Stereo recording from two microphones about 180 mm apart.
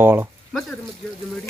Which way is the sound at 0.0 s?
15° right (ahead or behind).